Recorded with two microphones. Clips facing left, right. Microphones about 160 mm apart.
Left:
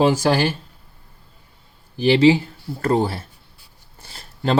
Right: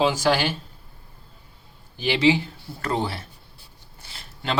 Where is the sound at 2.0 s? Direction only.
35° left (ahead or behind).